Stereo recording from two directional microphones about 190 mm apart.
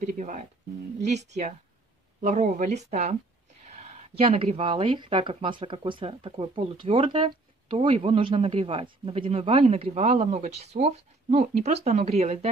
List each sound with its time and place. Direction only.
0.0 s speech: 40° right (ahead or behind)
3.6 s a sound: 35° right (ahead or behind)
4.2 s speech: 30° right (ahead or behind)